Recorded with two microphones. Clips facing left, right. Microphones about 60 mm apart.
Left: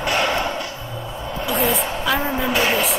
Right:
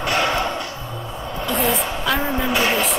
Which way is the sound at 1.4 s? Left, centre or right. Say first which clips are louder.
Even; centre.